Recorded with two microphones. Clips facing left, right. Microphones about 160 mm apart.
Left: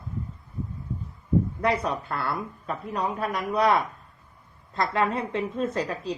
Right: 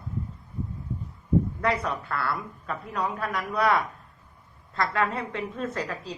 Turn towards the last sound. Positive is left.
turn(degrees=20)  # may be behind; listen again after turning